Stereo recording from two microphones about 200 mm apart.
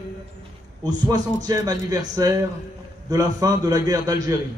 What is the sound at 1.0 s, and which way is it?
Speech, 20° right (ahead or behind).